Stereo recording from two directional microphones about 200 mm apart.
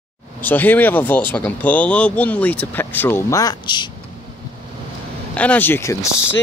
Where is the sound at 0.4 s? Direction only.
10° left (ahead or behind).